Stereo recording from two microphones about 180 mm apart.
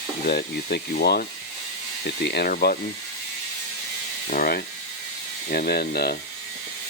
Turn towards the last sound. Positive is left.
turn(degrees=60)  # may be behind; listen again after turning